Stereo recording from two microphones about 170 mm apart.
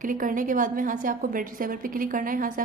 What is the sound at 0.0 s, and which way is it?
A woman's voice, 50° right (ahead or behind).